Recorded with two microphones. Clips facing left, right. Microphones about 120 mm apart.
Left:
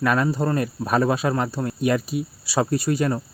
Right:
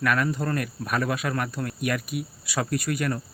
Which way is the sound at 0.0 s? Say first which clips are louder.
Left 4 dB; 25° left (ahead or behind).